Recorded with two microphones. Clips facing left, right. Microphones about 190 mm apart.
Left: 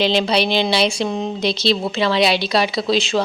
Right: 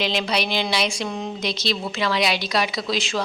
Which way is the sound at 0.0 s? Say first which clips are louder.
Left 6 dB; 30° left (ahead or behind).